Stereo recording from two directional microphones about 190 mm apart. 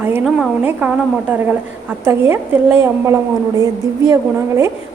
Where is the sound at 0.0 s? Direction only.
5° right (ahead or behind).